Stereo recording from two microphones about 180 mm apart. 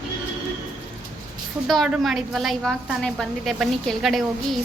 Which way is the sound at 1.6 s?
Centre (ahead or behind).